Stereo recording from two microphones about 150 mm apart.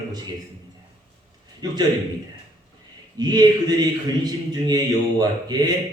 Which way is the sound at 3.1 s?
25° right (ahead or behind).